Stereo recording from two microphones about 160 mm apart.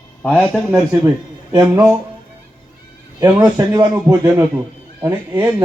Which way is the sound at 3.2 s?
20° right (ahead or behind).